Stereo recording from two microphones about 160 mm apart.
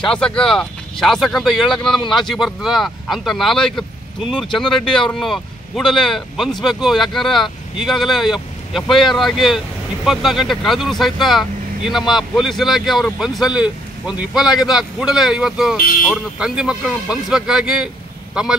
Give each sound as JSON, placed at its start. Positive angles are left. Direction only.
{"t": 0.0, "sound": "speech", "side_deg": 5}